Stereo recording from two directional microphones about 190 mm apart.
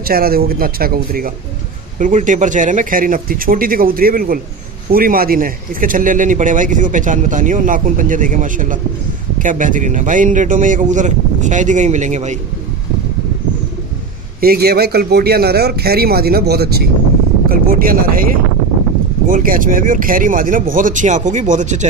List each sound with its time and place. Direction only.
0.0 s a man's voice: 50° right (ahead or behind)
14.4 s speech: 55° right (ahead or behind)